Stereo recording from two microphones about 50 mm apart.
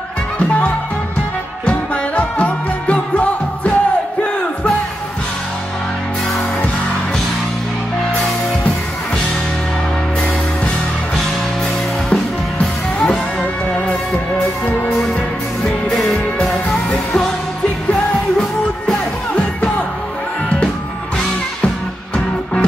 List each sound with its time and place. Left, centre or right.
0.4 s music: left
1.7 s music: left
12.1 s music: centre
16.0 s music: centre
22.1 s music: left